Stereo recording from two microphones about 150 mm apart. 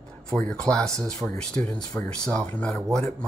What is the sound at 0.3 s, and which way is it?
Speech, 5° left (ahead or behind).